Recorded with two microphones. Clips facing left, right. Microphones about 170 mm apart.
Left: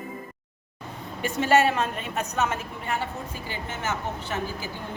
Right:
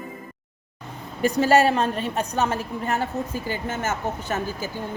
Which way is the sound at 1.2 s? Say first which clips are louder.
Right 3 dB; 40° right (ahead or behind).